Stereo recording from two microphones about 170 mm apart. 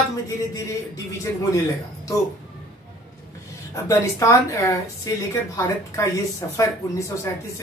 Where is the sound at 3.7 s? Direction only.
20° left (ahead or behind).